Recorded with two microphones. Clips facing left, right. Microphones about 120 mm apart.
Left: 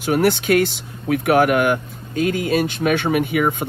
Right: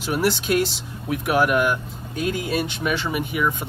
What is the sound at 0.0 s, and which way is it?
Speech, 55° left (ahead or behind).